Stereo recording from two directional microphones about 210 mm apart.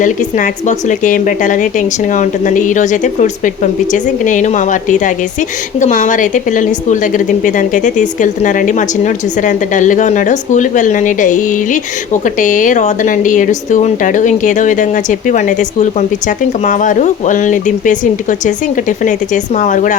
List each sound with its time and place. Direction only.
0.0 s a woman's voice: 40° left (ahead or behind)